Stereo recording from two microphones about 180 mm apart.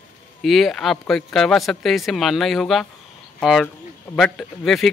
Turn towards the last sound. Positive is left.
turn(degrees=0)  # may be behind; listen again after turning